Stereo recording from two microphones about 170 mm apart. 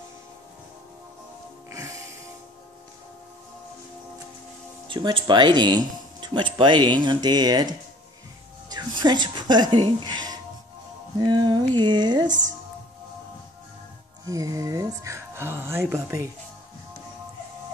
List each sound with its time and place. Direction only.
1.7 s music: 20° right (ahead or behind)
4.8 s speech: 30° right (ahead or behind)
14.2 s speech: 20° right (ahead or behind)